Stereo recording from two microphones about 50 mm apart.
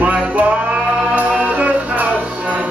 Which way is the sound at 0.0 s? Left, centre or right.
Right.